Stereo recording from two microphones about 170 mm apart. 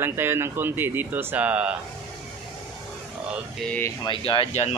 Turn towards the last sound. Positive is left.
turn(degrees=40)  # may be behind; listen again after turning